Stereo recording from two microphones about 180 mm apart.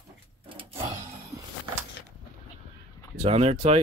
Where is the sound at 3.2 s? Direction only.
35° right (ahead or behind).